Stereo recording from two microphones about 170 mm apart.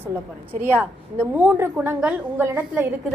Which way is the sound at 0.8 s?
10° right (ahead or behind).